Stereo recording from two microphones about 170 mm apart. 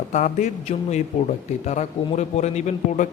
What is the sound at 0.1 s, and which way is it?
A man's voice, 45° left (ahead or behind).